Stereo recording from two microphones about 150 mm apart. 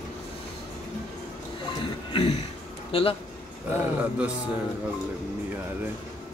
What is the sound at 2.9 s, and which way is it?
Speech, 40° left (ahead or behind).